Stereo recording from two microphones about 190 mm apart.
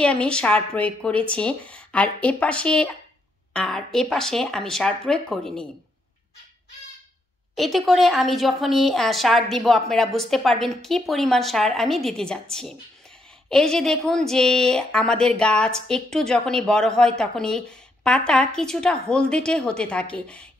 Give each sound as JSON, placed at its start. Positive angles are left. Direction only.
{"t": 0.0, "sound": "a woman's voice", "side_deg": 5}
{"t": 7.5, "sound": "a woman's voice", "side_deg": 0}